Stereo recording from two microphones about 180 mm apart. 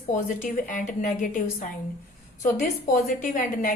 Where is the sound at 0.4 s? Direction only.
45° left (ahead or behind).